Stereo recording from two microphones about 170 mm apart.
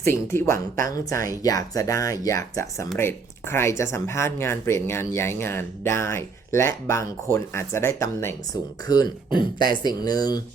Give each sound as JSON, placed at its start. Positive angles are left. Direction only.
{"t": 0.0, "sound": "speech", "side_deg": 15}